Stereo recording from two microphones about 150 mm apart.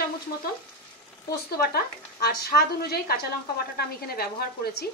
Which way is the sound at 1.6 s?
90° left.